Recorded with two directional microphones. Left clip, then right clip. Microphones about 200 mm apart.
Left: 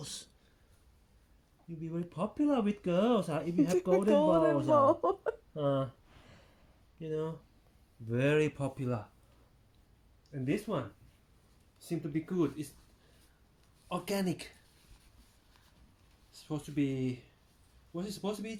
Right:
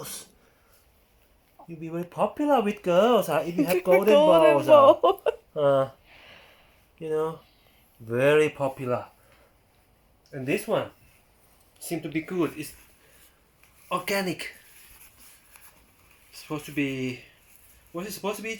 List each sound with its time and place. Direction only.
0.0 s a sound: 20° left (ahead or behind)
1.8 s speech: 15° left (ahead or behind)
5.5 s a sound: 15° left (ahead or behind)
7.0 s speech: 10° left (ahead or behind); by 9.0 s 30° left (ahead or behind)
10.3 s speech: 20° left (ahead or behind)
11.9 s speech: 15° left (ahead or behind)
13.8 s speech: 10° left (ahead or behind)
16.5 s speech: 10° left (ahead or behind)
16.8 s speech: 25° left (ahead or behind)